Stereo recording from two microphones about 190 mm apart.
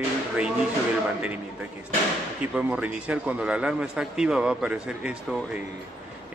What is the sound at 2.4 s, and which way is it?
A man's voice, 5° right (ahead or behind).